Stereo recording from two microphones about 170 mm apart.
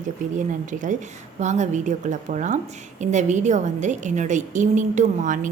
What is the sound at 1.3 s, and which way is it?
A woman's voice, 45° right (ahead or behind).